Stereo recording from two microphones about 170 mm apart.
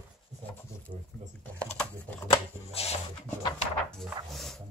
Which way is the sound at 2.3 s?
35° left (ahead or behind).